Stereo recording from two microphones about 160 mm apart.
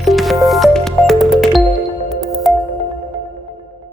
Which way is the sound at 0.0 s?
Centre (ahead or behind).